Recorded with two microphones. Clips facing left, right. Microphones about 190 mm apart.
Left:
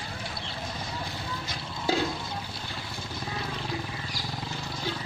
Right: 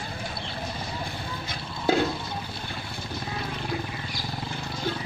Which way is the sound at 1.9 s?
55° right (ahead or behind).